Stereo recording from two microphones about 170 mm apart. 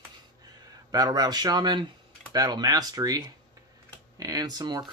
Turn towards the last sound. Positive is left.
turn(degrees=-25)  # may be behind; listen again after turning